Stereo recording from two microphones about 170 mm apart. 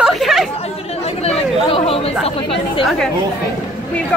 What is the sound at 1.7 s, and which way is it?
Speech, 35° left (ahead or behind).